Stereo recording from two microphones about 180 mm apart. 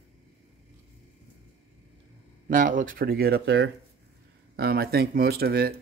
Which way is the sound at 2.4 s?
45° right (ahead or behind).